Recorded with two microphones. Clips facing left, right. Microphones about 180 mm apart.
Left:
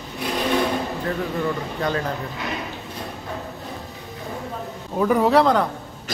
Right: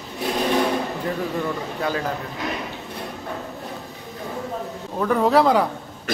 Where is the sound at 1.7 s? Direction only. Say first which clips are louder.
Even; 5° right (ahead or behind).